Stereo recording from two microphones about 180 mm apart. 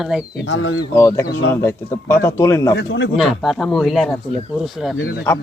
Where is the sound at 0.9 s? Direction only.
15° left (ahead or behind).